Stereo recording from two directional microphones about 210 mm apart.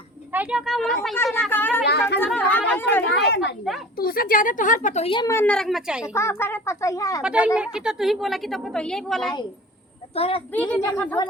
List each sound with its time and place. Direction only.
0.3 s a woman's voice: 5° right (ahead or behind); by 3.0 s 10° left (ahead or behind)
3.2 s a woman's voice: 55° left (ahead or behind); by 6.1 s 5° right (ahead or behind)
6.1 s a child's voice: 15° left (ahead or behind)
7.2 s a woman's voice: 5° right (ahead or behind)
10.2 s a child's voice: 25° left (ahead or behind)
10.5 s a child's voice: 5° left (ahead or behind)